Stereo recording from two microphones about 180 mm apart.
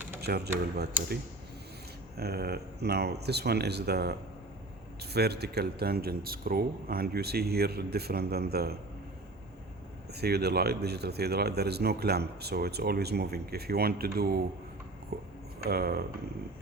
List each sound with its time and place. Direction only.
0.2 s speech: 65° right (ahead or behind)
2.1 s a man's voice: 60° right (ahead or behind)
5.1 s a man's voice: 65° right (ahead or behind)
10.2 s a man's voice: 65° right (ahead or behind)